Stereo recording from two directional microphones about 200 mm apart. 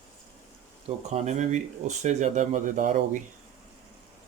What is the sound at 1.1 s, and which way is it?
Speech, 35° right (ahead or behind).